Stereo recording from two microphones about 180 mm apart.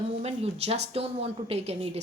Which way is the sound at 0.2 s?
35° right (ahead or behind).